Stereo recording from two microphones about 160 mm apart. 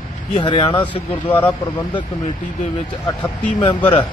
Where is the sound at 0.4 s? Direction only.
30° left (ahead or behind).